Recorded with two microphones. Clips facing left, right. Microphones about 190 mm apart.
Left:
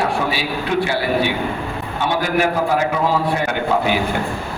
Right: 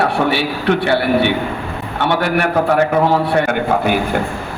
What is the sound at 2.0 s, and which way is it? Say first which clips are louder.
Speech: right 2 dB; 65° right (ahead or behind).